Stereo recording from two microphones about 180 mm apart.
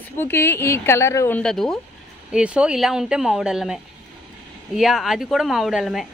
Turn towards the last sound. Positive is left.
turn(degrees=0)  # may be behind; listen again after turning